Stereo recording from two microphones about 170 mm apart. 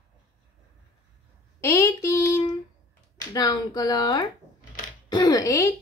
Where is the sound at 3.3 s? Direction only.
25° left (ahead or behind).